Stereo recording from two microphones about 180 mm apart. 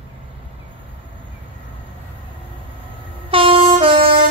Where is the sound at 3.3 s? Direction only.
30° right (ahead or behind).